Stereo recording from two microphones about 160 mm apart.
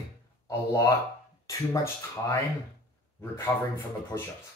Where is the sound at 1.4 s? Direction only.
20° left (ahead or behind).